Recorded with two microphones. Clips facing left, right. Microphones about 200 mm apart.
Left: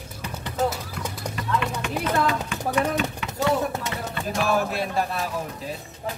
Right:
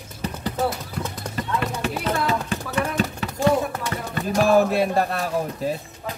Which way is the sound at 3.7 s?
25° left (ahead or behind).